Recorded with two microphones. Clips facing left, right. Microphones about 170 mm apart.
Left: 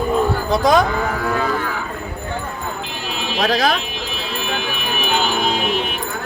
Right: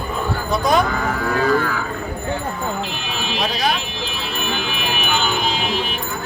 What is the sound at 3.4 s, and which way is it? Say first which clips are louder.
Speech: left 5 dB; 90° left.